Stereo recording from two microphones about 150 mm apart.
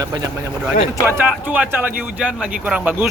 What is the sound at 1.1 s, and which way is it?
Speech, 15° right (ahead or behind).